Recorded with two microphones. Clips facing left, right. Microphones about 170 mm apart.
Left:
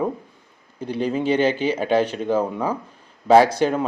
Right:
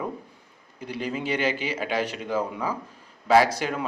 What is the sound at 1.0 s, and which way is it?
Speech, 30° left (ahead or behind).